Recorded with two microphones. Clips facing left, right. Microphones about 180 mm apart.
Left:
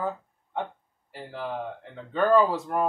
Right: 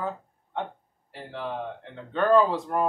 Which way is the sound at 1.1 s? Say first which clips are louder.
Even; centre (ahead or behind).